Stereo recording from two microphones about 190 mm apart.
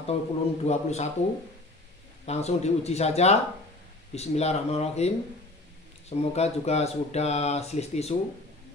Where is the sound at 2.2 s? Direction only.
35° left (ahead or behind).